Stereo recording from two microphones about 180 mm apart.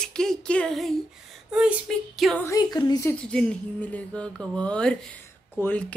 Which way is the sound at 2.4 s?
20° left (ahead or behind).